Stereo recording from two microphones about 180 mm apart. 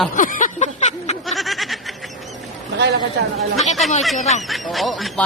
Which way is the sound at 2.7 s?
70° right (ahead or behind).